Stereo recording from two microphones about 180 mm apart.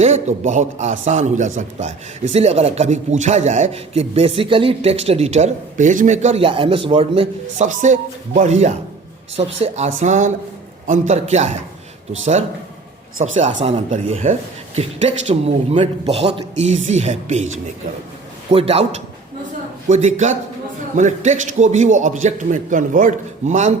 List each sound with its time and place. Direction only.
0.0 s a man's voice: 40° right (ahead or behind)
13.1 s a man's voice: 45° right (ahead or behind)
18.5 s a man's voice: 35° right (ahead or behind)